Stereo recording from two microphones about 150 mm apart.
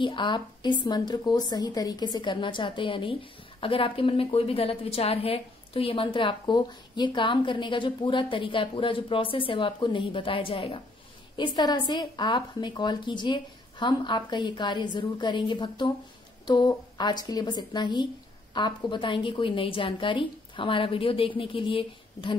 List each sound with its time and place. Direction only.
0.0 s a woman's voice: 30° left (ahead or behind)